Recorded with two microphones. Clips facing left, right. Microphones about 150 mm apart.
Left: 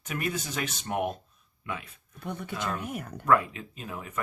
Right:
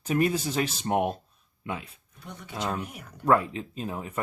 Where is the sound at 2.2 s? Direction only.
55° left (ahead or behind).